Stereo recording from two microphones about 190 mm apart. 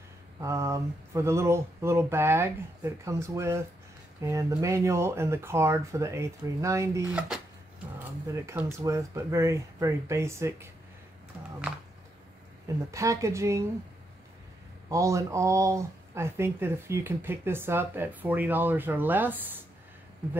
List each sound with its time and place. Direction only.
0.4 s speech: 15° right (ahead or behind)
8.5 s speech: 15° right (ahead or behind)
12.9 s speech: 15° right (ahead or behind)
14.9 s speech: 15° right (ahead or behind)